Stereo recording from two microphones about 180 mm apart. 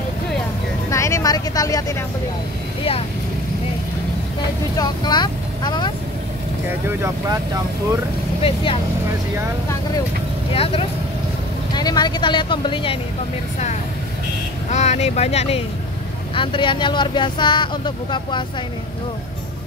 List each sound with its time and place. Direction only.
0.8 s speech: 15° left (ahead or behind)
4.7 s speech: 25° left (ahead or behind)
8.4 s speech: 30° left (ahead or behind)
10.5 s speech: 30° left (ahead or behind)
14.7 s speech: 40° left (ahead or behind)